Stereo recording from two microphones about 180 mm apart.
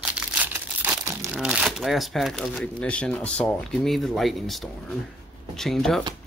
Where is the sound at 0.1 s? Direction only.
10° right (ahead or behind).